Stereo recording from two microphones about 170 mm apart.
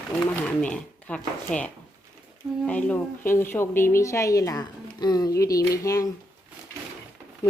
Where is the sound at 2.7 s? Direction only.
10° left (ahead or behind).